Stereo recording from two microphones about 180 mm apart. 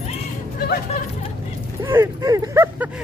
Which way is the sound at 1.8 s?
15° right (ahead or behind).